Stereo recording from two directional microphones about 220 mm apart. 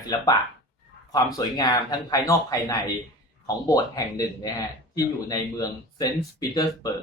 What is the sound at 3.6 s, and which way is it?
Speech, 15° left (ahead or behind).